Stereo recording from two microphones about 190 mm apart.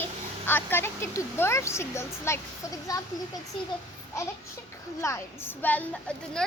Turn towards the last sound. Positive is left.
turn(degrees=5)  # may be behind; listen again after turning